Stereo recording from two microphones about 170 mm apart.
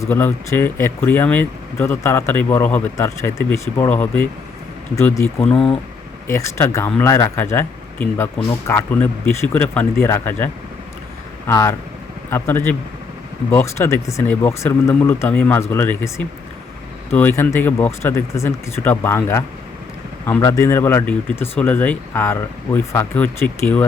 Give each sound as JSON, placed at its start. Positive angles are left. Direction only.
{"t": 0.0, "sound": "speech", "side_deg": 10}